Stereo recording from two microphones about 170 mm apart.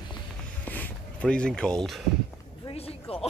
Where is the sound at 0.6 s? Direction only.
10° left (ahead or behind).